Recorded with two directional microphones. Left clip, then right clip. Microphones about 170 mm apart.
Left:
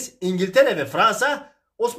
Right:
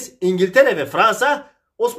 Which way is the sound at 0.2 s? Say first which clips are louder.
Right 4 dB; 15° right (ahead or behind).